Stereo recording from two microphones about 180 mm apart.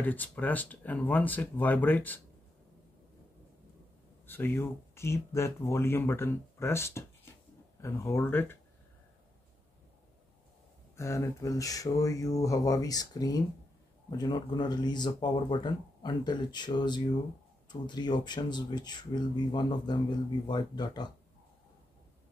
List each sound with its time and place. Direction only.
0.0 s speech: 10° left (ahead or behind)
4.3 s speech: 10° left (ahead or behind)
11.0 s speech: 15° left (ahead or behind)